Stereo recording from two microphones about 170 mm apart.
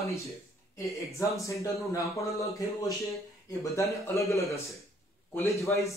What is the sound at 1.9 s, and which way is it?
A man's voice, 20° left (ahead or behind).